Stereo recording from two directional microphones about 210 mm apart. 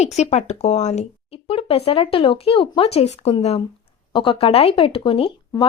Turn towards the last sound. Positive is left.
turn(degrees=25)  # may be behind; listen again after turning